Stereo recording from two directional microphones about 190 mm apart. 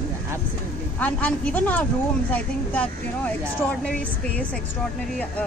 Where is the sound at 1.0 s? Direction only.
10° left (ahead or behind).